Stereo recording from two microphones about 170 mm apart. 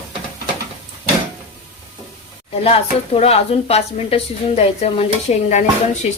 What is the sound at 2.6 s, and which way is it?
A woman's voice, 35° left (ahead or behind).